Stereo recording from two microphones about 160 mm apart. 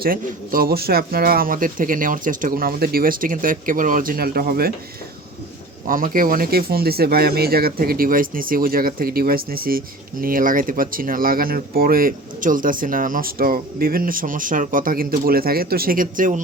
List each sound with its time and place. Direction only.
0.0 s speech: 65° right (ahead or behind)
5.9 s speech: 60° right (ahead or behind)